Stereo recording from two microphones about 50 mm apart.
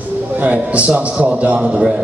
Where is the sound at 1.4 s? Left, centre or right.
Right.